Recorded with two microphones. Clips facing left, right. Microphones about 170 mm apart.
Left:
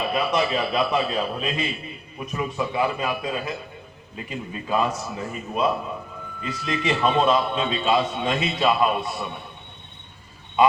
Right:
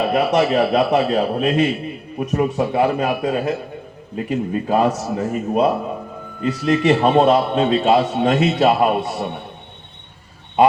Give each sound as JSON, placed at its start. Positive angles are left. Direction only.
{"t": 0.0, "sound": "a man's voice", "side_deg": -65}
{"t": 4.2, "sound": "a man's voice", "side_deg": -55}
{"t": 5.1, "sound": "a man's voice", "side_deg": -45}
{"t": 6.4, "sound": "a man's voice", "side_deg": -65}